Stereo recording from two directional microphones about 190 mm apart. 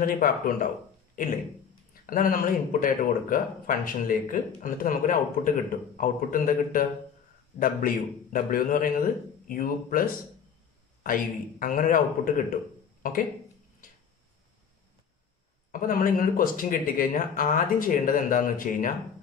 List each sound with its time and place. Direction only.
0.0 s speech: 50° left (ahead or behind)
11.6 s speech: 45° left (ahead or behind)
15.7 s speech: 45° left (ahead or behind)